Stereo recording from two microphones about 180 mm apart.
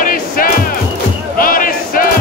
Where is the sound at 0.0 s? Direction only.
50° left (ahead or behind).